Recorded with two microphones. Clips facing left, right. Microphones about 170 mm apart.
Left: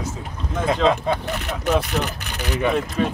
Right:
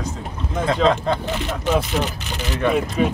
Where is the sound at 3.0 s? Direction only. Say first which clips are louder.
Right 3 dB; 10° right (ahead or behind).